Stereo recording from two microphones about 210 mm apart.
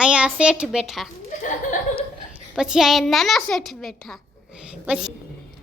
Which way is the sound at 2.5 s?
5° right (ahead or behind).